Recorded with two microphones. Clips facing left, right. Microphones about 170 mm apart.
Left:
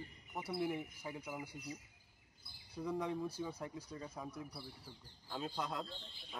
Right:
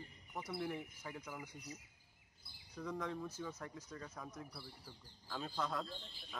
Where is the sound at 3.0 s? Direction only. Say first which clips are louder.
Left 3 dB; 15° left (ahead or behind).